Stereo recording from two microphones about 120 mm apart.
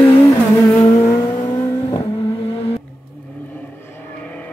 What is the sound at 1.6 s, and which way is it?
Vehicle, 25° left (ahead or behind).